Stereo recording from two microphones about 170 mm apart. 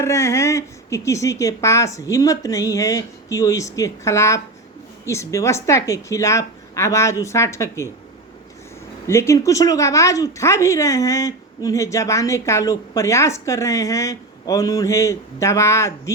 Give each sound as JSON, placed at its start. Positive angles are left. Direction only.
{"t": 0.0, "sound": "speech", "side_deg": 15}
{"t": 9.0, "sound": "speech", "side_deg": 15}